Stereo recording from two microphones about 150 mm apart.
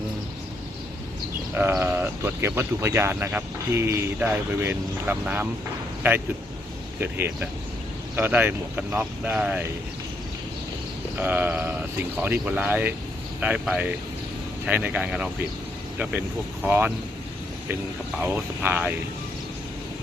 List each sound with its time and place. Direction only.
1.5 s speech: 15° right (ahead or behind)
11.2 s speech: 15° right (ahead or behind)
16.6 s speech: 10° right (ahead or behind)
18.2 s speech: 10° right (ahead or behind)